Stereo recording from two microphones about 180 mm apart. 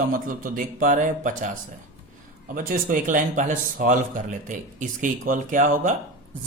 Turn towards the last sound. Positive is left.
turn(degrees=-45)  # may be behind; listen again after turning